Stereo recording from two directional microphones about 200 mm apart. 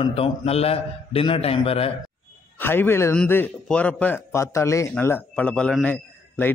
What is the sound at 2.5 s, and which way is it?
A man's voice, 10° left (ahead or behind).